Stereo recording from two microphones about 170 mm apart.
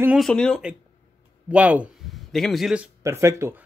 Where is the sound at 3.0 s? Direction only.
15° right (ahead or behind).